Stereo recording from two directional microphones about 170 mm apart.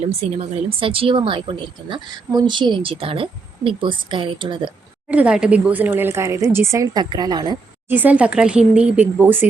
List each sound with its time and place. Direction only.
0.1 s speech: 35° right (ahead or behind)
5.0 s speech: 5° right (ahead or behind); by 7.6 s 25° right (ahead or behind)
7.9 s speech: 10° right (ahead or behind)